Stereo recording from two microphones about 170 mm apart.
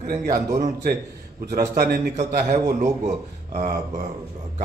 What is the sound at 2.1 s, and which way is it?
A man's voice, 45° right (ahead or behind).